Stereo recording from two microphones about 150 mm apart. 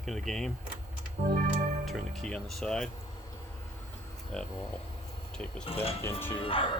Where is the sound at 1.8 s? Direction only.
Centre (ahead or behind).